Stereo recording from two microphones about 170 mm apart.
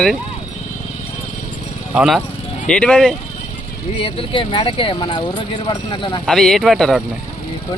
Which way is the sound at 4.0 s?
30° left (ahead or behind).